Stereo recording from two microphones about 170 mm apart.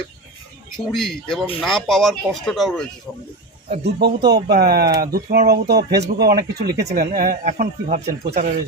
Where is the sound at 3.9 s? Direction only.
75° right (ahead or behind).